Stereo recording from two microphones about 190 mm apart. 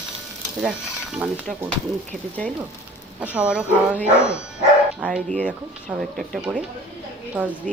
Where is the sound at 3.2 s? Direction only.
5° right (ahead or behind).